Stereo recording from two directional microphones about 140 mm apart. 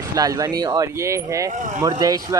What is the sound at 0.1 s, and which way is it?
Speech, 25° right (ahead or behind).